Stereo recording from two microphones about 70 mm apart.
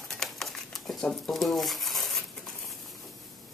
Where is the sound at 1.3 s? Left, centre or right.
Centre.